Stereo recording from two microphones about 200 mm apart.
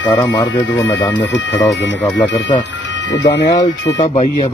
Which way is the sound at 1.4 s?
65° left (ahead or behind).